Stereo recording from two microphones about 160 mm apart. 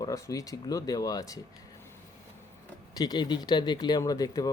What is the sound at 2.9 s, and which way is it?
Speech, 25° left (ahead or behind).